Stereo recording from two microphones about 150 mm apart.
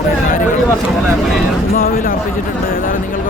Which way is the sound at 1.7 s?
70° left (ahead or behind).